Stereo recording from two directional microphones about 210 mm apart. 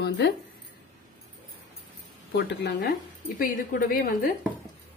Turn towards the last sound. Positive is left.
turn(degrees=45)  # may be behind; listen again after turning